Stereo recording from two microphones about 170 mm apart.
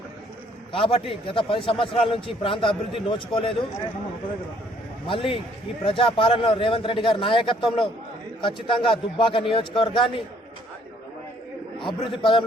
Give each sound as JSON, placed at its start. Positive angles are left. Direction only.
{"t": 0.7, "sound": "a man's voice", "side_deg": 30}
{"t": 5.0, "sound": "a man's voice", "side_deg": 30}
{"t": 11.8, "sound": "a man's voice", "side_deg": 30}